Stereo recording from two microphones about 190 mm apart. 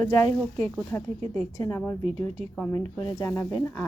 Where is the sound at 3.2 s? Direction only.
15° left (ahead or behind).